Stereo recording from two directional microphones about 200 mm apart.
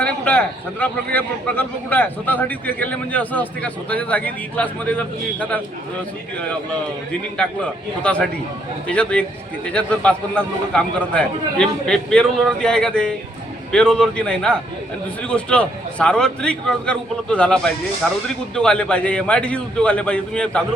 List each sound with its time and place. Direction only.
0.0 s a man's voice: 5° left (ahead or behind)
7.1 s a man's voice: 5° left (ahead or behind)